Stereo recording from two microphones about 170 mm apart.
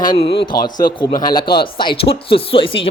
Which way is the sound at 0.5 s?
65° left (ahead or behind).